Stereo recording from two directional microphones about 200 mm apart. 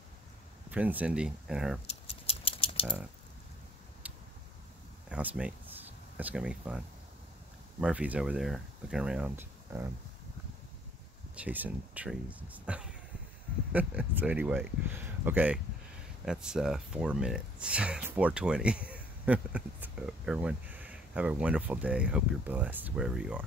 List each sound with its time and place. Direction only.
0.7 s speech: 10° right (ahead or behind)
1.9 s rattle: 30° left (ahead or behind)
5.1 s speech: 5° right (ahead or behind)
7.8 s speech: 5° right (ahead or behind)
11.3 s speech: 10° right (ahead or behind)